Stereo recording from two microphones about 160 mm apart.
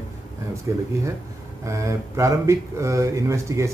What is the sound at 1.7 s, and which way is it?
Speech, 20° right (ahead or behind).